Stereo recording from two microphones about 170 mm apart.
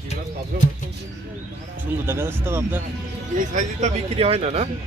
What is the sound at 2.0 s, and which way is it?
Speech, 15° right (ahead or behind).